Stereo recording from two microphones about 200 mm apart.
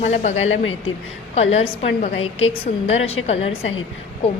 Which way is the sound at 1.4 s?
30° left (ahead or behind).